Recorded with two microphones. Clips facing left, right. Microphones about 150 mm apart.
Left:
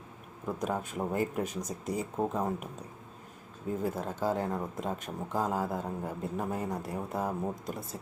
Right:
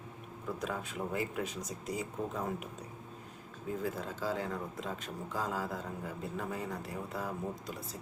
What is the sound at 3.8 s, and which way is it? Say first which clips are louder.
Speech: left 5 dB; 50° left (ahead or behind).